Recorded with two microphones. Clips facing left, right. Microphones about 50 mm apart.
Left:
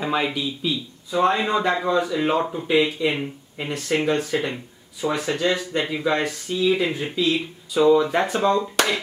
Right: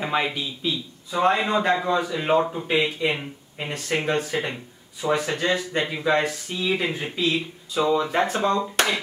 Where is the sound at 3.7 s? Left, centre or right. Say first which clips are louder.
Left 3 dB; right.